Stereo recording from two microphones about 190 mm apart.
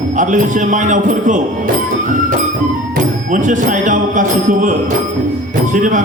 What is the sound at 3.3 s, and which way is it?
Speech, 40° right (ahead or behind).